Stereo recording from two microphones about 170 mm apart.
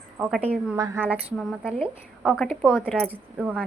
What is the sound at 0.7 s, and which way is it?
A woman's voice, 15° right (ahead or behind).